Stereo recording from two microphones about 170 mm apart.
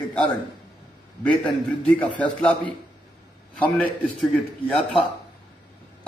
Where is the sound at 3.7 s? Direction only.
5° left (ahead or behind).